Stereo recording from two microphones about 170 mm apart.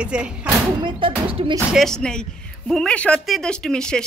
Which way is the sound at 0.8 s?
30° right (ahead or behind).